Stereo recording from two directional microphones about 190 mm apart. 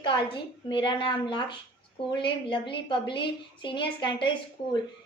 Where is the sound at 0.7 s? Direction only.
25° left (ahead or behind).